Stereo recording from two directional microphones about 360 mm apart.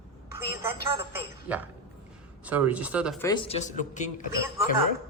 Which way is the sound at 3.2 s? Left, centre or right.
Centre.